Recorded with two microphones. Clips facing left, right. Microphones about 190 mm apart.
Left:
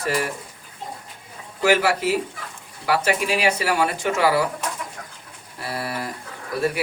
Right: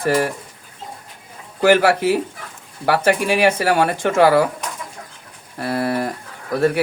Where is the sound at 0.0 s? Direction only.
55° right (ahead or behind).